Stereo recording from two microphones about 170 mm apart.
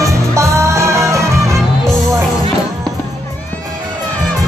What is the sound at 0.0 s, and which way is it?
Music, 15° right (ahead or behind).